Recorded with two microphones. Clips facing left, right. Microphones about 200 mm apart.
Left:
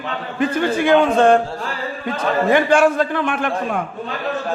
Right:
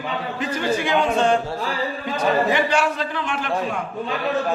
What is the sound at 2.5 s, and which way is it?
A man's voice, 50° left (ahead or behind).